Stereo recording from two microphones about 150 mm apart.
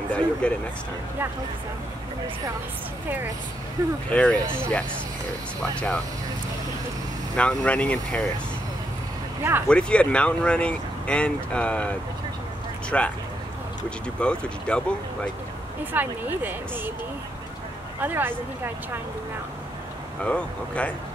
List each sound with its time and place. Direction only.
0.1 s speech: 5° left (ahead or behind)
4.1 s speech: 5° left (ahead or behind)
4.4 s speech: 15° right (ahead or behind)
5.6 s speech: 5° left (ahead or behind)
7.3 s speech: 10° left (ahead or behind)
9.7 s speech: 5° left (ahead or behind)
15.8 s speech: 10° right (ahead or behind)
18.0 s speech: 15° right (ahead or behind)
20.2 s speech: 10° left (ahead or behind)